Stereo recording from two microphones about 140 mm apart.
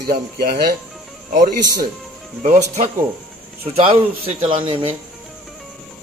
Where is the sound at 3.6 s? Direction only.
40° right (ahead or behind).